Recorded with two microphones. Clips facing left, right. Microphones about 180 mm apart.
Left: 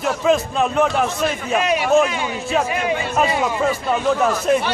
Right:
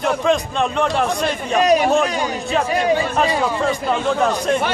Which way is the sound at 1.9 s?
Centre (ahead or behind).